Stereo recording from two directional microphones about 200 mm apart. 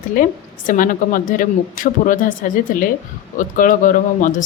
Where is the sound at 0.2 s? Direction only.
45° left (ahead or behind).